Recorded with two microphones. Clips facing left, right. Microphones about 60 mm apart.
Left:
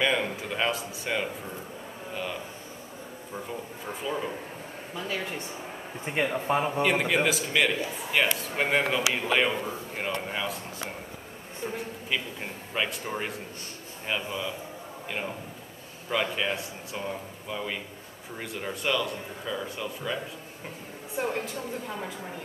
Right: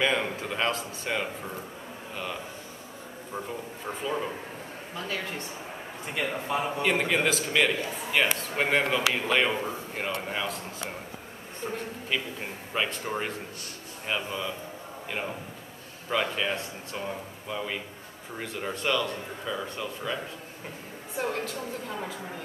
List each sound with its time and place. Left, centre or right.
0.0 s a man's voice: centre
3.8 s a man's voice: centre
6.0 s speech: left
6.6 s a man's voice: centre
21.2 s a man's voice: centre